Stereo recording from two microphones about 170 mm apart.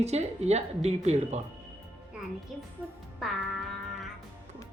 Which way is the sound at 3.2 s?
Centre (ahead or behind).